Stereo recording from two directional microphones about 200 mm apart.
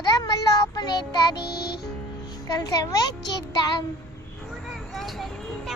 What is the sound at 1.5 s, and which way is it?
Music, 55° left (ahead or behind).